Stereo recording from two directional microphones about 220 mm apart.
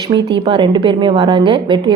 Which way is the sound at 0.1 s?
20° right (ahead or behind).